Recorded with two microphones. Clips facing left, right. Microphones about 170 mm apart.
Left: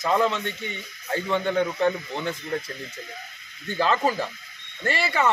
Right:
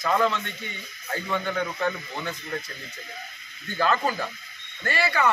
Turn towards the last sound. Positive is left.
turn(degrees=25)  # may be behind; listen again after turning